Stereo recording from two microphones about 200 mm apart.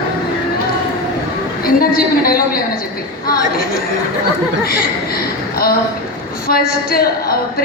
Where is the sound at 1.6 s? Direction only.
50° left (ahead or behind).